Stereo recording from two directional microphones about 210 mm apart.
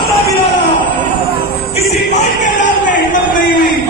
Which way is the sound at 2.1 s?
35° left (ahead or behind).